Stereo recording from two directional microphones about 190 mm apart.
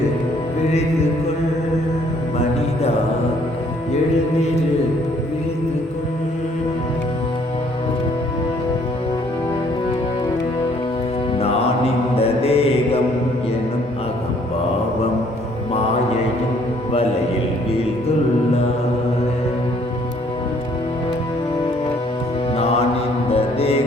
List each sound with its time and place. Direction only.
12.1 s mantra: 30° left (ahead or behind)
22.5 s mantra: 30° left (ahead or behind)
23.3 s music: 30° left (ahead or behind)